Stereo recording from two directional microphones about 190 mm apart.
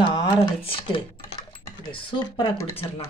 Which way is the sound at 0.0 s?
25° left (ahead or behind).